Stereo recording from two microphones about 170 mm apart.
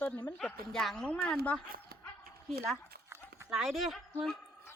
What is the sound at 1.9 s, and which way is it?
Dog, 65° right (ahead or behind).